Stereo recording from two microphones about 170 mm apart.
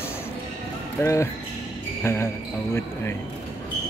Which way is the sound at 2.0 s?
15° left (ahead or behind).